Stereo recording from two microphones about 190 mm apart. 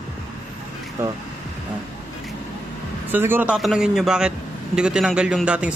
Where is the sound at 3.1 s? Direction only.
10° right (ahead or behind).